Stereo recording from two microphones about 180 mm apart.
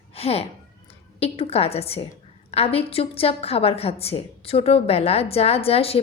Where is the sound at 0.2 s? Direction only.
35° left (ahead or behind).